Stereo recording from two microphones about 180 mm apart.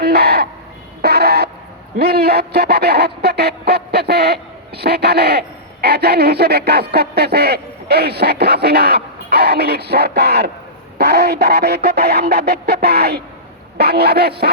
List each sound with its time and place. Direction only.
0.0 s crow: 60° right (ahead or behind)
1.0 s a sound: 65° right (ahead or behind)
2.0 s speech: 60° right (ahead or behind)